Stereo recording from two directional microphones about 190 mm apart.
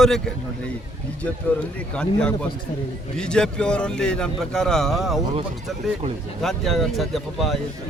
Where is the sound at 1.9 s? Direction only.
5° left (ahead or behind).